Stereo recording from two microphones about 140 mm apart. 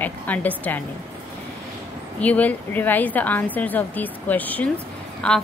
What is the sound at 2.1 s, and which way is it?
A woman's voice, 10° left (ahead or behind).